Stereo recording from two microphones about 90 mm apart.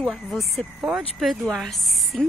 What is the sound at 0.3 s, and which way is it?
Speech, 5° left (ahead or behind).